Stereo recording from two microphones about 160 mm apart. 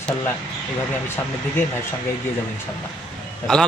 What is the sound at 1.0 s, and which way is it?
Speech, 15° left (ahead or behind).